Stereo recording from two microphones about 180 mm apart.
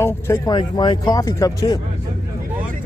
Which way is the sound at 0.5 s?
25° left (ahead or behind).